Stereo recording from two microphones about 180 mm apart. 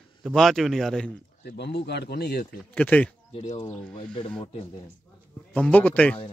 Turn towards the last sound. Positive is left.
turn(degrees=10)  # may be behind; listen again after turning